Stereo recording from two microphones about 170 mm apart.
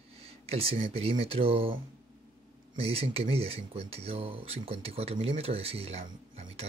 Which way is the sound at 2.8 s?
35° right (ahead or behind).